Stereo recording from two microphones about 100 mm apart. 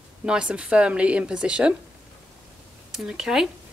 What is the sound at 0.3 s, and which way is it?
Speech, 10° right (ahead or behind).